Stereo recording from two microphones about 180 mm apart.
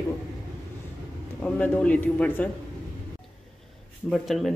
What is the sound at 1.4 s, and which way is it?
A man's voice, 5° left (ahead or behind).